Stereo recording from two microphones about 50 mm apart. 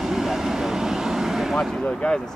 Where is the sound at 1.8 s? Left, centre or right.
Centre.